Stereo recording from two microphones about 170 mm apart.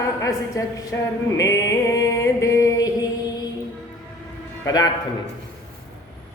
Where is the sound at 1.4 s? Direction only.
20° left (ahead or behind).